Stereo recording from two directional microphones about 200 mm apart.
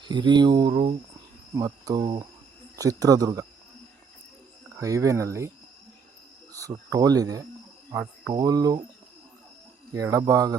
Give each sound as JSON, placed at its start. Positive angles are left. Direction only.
{"t": 0.0, "sound": "speech", "side_deg": -20}
{"t": 4.8, "sound": "speech", "side_deg": -15}
{"t": 6.5, "sound": "speech", "side_deg": -15}
{"t": 9.9, "sound": "speech", "side_deg": -15}